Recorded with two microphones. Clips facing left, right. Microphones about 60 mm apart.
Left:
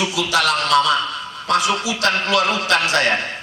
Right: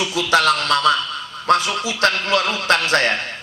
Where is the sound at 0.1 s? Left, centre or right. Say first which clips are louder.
Right 2 dB; right.